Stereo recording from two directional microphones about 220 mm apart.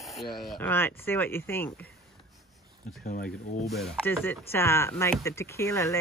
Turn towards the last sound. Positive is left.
turn(degrees=15)  # may be behind; listen again after turning